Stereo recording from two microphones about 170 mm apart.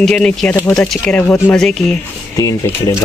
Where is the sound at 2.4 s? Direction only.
20° left (ahead or behind).